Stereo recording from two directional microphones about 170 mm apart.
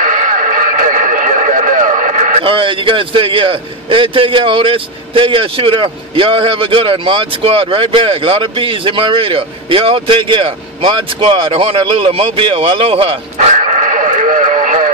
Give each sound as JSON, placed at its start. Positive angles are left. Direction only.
{"t": 0.0, "sound": "radio", "side_deg": -50}
{"t": 2.4, "sound": "a man's voice", "side_deg": -30}
{"t": 13.5, "sound": "radio", "side_deg": -45}